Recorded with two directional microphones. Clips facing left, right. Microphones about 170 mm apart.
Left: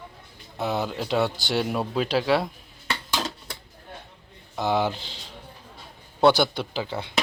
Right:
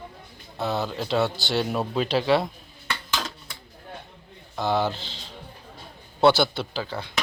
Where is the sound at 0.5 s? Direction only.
15° left (ahead or behind).